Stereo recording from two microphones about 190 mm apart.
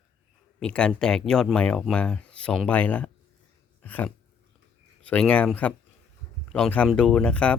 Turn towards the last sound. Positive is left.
turn(degrees=5)  # may be behind; listen again after turning